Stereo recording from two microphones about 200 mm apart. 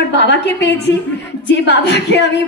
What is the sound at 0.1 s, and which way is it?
A woman's voice, 60° left (ahead or behind).